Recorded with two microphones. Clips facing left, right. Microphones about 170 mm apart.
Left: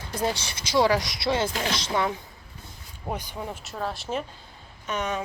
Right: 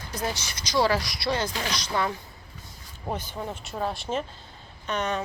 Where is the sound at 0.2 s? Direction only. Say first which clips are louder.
Left 4 dB; 30° left (ahead or behind).